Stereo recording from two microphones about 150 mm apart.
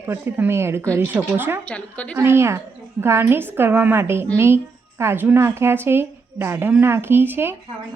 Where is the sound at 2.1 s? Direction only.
15° right (ahead or behind).